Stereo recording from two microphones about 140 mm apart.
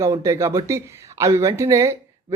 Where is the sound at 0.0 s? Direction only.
20° right (ahead or behind).